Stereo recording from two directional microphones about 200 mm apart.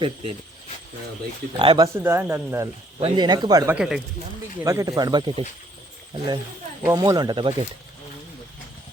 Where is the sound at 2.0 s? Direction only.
10° right (ahead or behind).